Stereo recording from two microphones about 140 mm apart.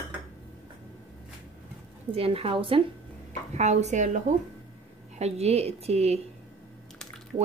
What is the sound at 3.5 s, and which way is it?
Speech, 55° right (ahead or behind).